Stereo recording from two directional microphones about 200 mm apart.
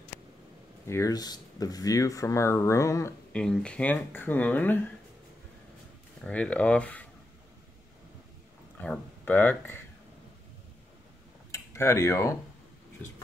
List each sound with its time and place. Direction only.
0.8 s speech: 15° left (ahead or behind)
3.3 s speech: 5° left (ahead or behind)
6.2 s speech: 5° left (ahead or behind)
8.8 s speech: 5° left (ahead or behind)
11.5 s speech: 15° left (ahead or behind)